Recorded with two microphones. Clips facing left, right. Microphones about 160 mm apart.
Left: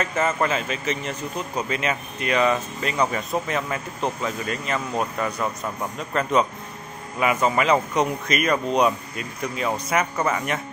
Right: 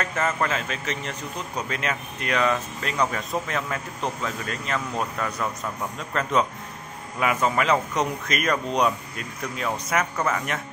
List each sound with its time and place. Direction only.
0.0 s speech: 5° left (ahead or behind)